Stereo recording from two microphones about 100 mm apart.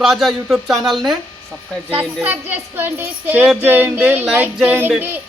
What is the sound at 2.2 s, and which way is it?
A woman's voice, 20° right (ahead or behind).